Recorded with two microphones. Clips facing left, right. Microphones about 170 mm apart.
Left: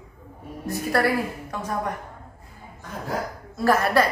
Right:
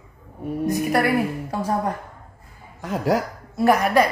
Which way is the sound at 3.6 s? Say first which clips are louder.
Right 2 dB; 15° right (ahead or behind).